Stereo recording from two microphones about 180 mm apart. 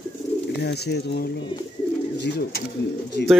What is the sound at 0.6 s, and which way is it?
Speech, 65° left (ahead or behind).